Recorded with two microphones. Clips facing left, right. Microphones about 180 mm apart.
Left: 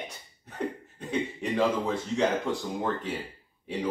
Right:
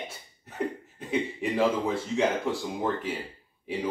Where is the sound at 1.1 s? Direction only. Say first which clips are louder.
Right 1 dB; 5° right (ahead or behind).